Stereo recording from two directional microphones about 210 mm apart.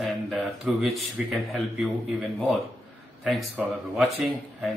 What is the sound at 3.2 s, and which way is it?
Speech, 5° right (ahead or behind).